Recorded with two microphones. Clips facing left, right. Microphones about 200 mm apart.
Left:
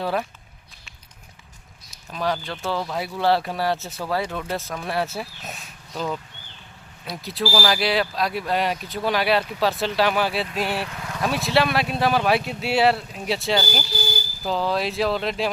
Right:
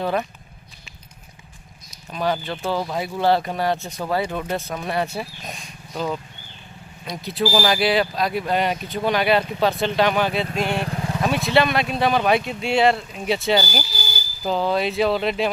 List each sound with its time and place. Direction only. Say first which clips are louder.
0.0 s speech: right 2 dB; centre (ahead or behind)
1.9 s speech: right 2 dB; centre (ahead or behind)
4.1 s speech: right 2 dB; 5° right (ahead or behind)
10.8 s vehicle: right 7 dB; 30° right (ahead or behind)
11.2 s speech: right 2 dB; centre (ahead or behind)